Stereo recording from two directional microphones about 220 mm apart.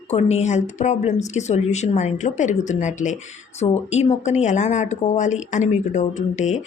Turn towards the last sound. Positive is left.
turn(degrees=35)  # may be behind; listen again after turning